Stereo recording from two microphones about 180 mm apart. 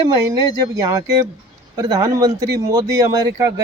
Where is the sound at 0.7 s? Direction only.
15° right (ahead or behind).